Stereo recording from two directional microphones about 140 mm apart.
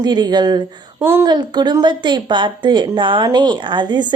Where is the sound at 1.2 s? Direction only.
30° right (ahead or behind).